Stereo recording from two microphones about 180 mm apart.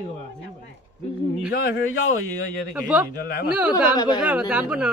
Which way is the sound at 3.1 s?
55° left (ahead or behind).